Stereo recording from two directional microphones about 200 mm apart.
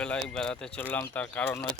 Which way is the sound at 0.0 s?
5° left (ahead or behind).